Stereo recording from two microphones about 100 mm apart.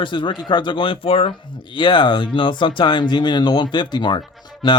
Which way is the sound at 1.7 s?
50° left (ahead or behind).